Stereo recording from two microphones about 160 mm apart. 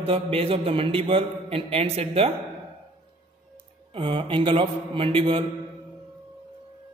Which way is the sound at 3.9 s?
30° right (ahead or behind).